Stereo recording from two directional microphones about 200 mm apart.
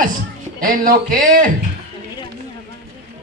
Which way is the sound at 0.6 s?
45° right (ahead or behind).